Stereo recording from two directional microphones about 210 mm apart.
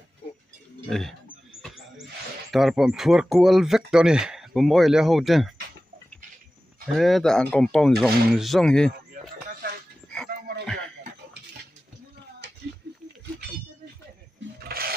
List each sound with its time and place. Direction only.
0.8 s speech: centre (ahead or behind)
2.5 s speech: centre (ahead or behind)
7.0 s speech: centre (ahead or behind)
10.1 s dog: 5° left (ahead or behind)
14.6 s a sound: 45° right (ahead or behind)